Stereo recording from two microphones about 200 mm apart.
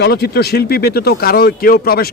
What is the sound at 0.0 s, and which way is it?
Speech, 55° left (ahead or behind).